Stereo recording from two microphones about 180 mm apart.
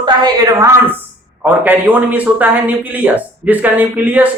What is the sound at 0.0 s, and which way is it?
A woman's voice, 20° right (ahead or behind).